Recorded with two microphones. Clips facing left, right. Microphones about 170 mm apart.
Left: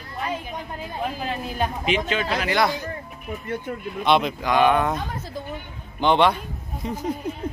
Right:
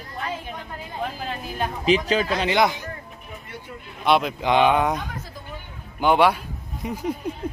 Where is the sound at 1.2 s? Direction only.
Centre (ahead or behind).